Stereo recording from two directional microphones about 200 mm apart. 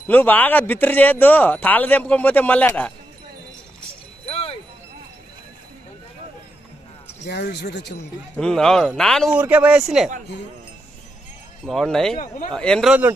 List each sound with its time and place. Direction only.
0.1 s speech: 10° left (ahead or behind)
4.3 s wind chime: 30° left (ahead or behind)
7.2 s speech: 55° left (ahead or behind)
8.4 s speech: centre (ahead or behind)
11.6 s speech: centre (ahead or behind)